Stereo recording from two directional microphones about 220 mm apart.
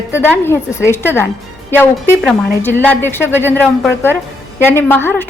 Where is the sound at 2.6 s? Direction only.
10° left (ahead or behind).